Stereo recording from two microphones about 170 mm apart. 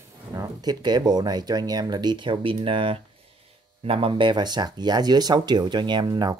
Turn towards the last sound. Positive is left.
turn(degrees=-20)  # may be behind; listen again after turning